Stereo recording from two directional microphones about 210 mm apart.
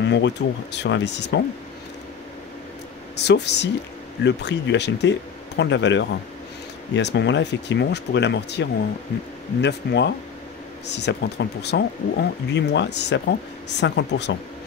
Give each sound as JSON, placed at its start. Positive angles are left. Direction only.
{"t": 0.1, "sound": "speech", "side_deg": 55}
{"t": 3.2, "sound": "speech", "side_deg": 55}